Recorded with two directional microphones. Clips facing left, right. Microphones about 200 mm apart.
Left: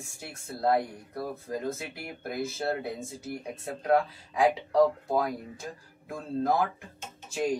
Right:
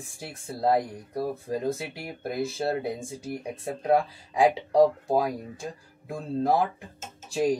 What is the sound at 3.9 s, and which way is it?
Speech, 30° right (ahead or behind).